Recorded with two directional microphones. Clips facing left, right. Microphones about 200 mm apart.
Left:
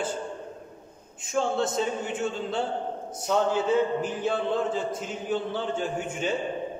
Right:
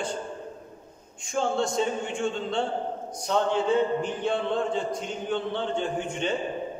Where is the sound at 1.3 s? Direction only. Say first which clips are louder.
Even; centre (ahead or behind).